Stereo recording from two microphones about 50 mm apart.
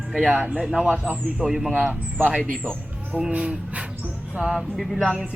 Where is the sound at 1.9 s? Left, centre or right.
Right.